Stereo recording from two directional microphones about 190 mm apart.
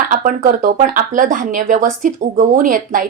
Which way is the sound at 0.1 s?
50° right (ahead or behind).